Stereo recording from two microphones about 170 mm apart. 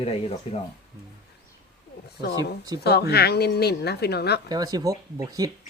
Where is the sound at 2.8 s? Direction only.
70° left (ahead or behind).